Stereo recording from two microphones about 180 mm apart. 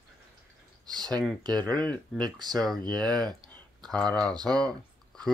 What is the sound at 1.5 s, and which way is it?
Speech, 5° left (ahead or behind).